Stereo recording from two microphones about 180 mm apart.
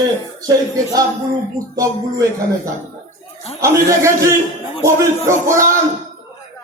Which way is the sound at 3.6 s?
15° right (ahead or behind).